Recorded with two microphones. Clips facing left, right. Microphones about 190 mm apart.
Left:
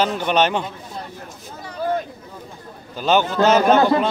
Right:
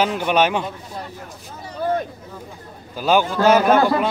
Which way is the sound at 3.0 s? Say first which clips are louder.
Even; 10° right (ahead or behind).